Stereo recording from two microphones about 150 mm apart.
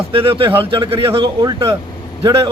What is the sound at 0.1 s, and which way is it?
A man's voice, 35° right (ahead or behind).